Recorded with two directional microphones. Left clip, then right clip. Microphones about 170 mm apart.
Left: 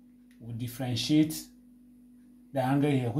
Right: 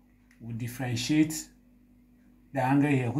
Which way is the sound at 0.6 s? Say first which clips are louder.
Even; 50° left (ahead or behind).